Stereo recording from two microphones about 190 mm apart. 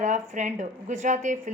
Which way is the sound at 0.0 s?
40° right (ahead or behind).